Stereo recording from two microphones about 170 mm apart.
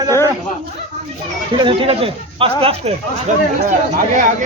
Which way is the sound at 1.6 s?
35° right (ahead or behind).